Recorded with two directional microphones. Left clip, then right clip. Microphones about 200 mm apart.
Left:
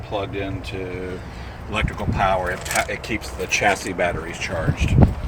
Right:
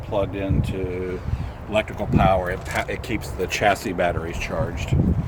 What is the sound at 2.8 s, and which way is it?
Speech, 50° right (ahead or behind).